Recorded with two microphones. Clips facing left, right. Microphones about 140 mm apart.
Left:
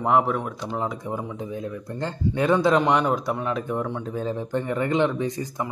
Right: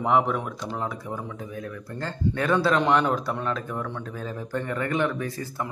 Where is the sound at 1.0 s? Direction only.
20° left (ahead or behind).